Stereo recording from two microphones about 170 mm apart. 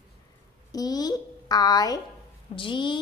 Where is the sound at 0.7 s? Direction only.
20° left (ahead or behind).